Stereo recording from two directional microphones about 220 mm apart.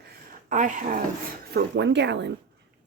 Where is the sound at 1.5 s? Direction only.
50° right (ahead or behind).